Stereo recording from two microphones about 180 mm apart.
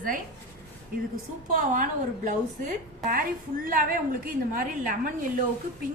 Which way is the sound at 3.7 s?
50° right (ahead or behind).